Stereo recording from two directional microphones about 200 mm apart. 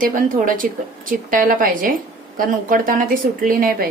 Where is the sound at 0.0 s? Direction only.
45° right (ahead or behind).